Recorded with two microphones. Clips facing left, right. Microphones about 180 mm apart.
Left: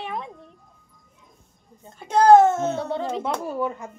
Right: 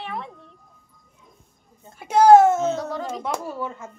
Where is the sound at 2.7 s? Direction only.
30° left (ahead or behind).